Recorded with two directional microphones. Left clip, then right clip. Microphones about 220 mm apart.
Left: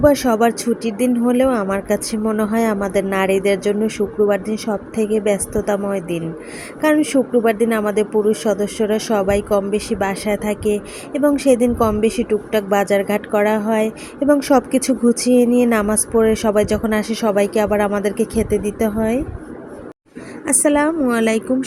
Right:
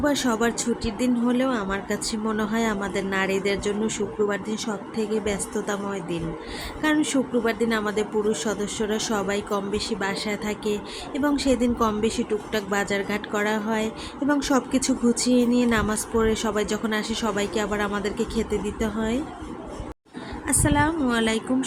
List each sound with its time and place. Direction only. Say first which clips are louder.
0.0 s a woman's voice: left 9 dB; 10° left (ahead or behind)
20.4 s a woman's voice: left 7 dB; 15° left (ahead or behind)